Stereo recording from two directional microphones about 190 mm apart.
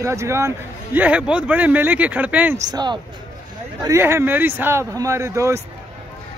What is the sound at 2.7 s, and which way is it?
A man's voice, 25° right (ahead or behind).